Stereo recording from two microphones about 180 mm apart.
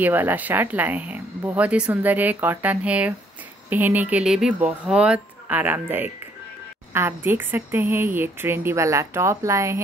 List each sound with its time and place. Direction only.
0.0 s speech: 10° right (ahead or behind)